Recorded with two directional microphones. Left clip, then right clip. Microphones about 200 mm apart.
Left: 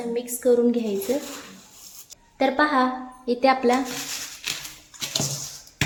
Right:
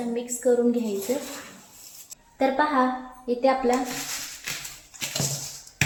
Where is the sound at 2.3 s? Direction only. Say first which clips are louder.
Left 2 dB; 25° left (ahead or behind).